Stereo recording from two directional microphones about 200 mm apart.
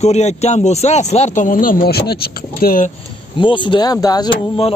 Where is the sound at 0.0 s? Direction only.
35° left (ahead or behind).